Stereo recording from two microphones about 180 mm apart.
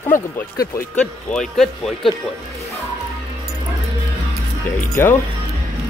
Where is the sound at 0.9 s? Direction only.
5° left (ahead or behind).